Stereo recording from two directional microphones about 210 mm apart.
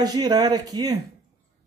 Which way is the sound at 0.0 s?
20° right (ahead or behind).